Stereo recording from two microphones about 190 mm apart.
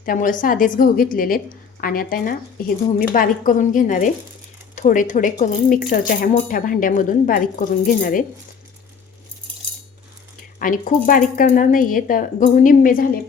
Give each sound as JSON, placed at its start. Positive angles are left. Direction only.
{"t": 0.0, "sound": "speech", "side_deg": 45}
{"t": 10.6, "sound": "speech", "side_deg": 45}